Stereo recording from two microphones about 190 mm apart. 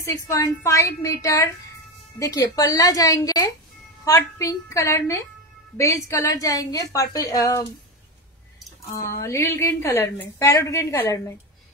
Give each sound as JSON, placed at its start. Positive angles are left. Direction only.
{"t": 0.0, "sound": "a woman's voice", "side_deg": 15}
{"t": 8.9, "sound": "a woman's voice", "side_deg": 15}